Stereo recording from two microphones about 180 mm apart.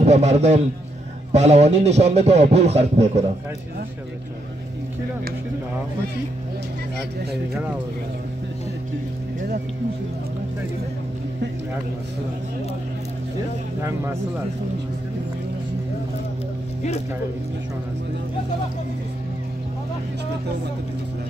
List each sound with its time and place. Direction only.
0.0 s speech: 35° right (ahead or behind)
13.7 s speech: 15° right (ahead or behind)